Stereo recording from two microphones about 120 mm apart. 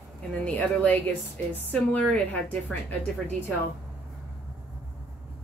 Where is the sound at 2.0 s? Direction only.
10° left (ahead or behind).